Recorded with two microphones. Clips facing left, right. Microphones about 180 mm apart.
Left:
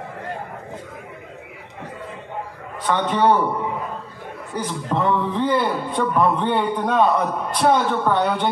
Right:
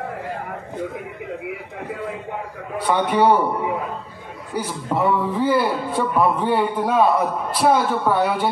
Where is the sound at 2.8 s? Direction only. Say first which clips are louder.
Right 1 dB; 10° right (ahead or behind).